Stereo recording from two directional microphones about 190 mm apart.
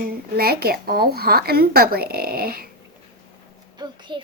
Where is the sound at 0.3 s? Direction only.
55° right (ahead or behind).